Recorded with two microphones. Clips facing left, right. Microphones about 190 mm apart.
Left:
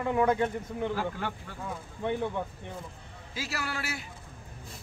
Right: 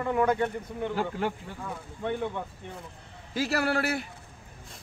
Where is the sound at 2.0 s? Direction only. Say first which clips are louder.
Even; 15° left (ahead or behind).